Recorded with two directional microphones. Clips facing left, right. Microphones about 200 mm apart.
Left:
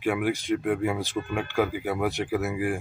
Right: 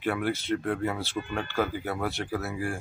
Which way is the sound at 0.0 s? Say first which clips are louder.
Left 3 dB; 15° left (ahead or behind).